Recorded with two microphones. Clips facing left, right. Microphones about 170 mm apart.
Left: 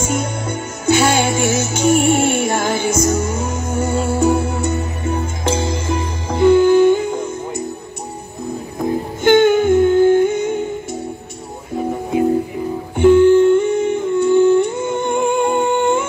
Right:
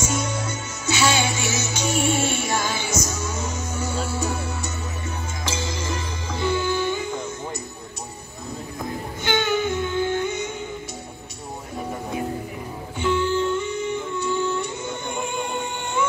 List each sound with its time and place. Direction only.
0.0 s music: 55° left (ahead or behind)
9.2 s music: 50° left (ahead or behind)
12.9 s humming: 55° left (ahead or behind)